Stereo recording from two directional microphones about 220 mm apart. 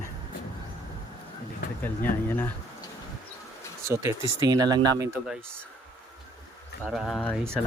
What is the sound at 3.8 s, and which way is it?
Speech, 10° right (ahead or behind).